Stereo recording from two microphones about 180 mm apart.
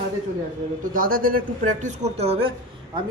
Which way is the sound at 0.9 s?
50° right (ahead or behind).